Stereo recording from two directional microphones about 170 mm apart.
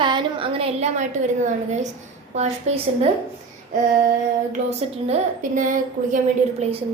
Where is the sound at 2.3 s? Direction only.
40° right (ahead or behind).